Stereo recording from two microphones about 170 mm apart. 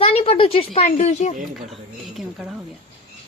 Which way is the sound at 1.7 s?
Centre (ahead or behind).